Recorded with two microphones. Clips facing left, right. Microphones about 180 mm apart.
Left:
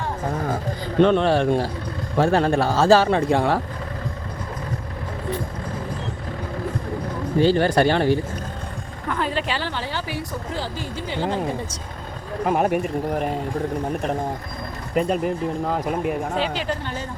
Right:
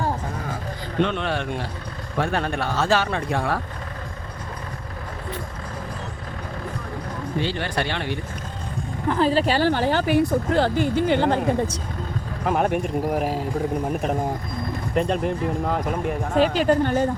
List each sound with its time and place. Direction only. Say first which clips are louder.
0.9 s speech: left 7 dB; 35° left (ahead or behind)
7.3 s speech: left 9 dB; 40° left (ahead or behind)
9.0 s speech: right 5 dB; 30° right (ahead or behind); by 11.8 s 60° right (ahead or behind)
12.5 s speech: left 1 dB; 5° left (ahead or behind)
16.4 s speech: right 7 dB; 50° right (ahead or behind)